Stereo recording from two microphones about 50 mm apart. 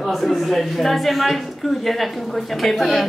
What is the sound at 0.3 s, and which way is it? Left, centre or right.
A man's voice, centre.